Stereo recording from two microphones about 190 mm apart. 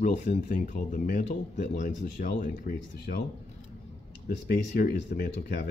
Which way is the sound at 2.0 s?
50° left (ahead or behind).